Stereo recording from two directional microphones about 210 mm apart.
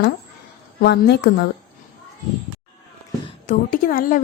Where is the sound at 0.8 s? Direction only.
50° left (ahead or behind).